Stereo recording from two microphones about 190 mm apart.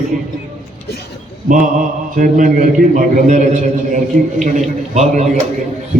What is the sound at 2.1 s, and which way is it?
A man's voice, 45° right (ahead or behind).